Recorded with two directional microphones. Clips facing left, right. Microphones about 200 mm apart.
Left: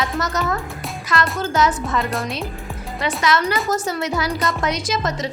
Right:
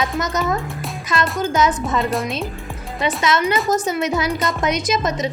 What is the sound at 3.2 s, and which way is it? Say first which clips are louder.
A woman's voice: even; 20° right (ahead or behind).